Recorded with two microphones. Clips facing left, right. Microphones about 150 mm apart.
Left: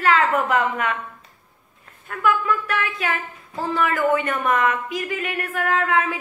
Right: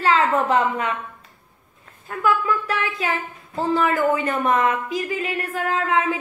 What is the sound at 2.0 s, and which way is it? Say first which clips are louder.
Speech: even; 25° right (ahead or behind).